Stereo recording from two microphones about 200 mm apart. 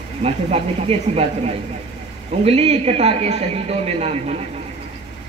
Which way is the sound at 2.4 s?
35° right (ahead or behind).